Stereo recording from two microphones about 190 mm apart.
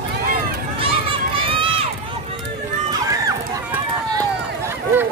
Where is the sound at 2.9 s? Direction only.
20° right (ahead or behind).